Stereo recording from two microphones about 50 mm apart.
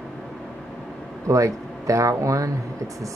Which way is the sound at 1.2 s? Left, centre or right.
Right.